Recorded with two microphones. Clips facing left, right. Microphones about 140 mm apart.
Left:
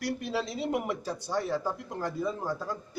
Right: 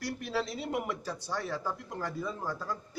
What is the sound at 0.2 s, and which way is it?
Speech, 20° left (ahead or behind).